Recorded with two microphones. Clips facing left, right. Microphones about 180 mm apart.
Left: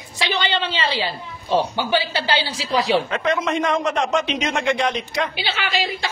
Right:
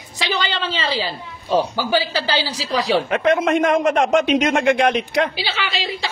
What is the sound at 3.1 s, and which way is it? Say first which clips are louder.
A man's voice: right 5 dB; 55° right (ahead or behind).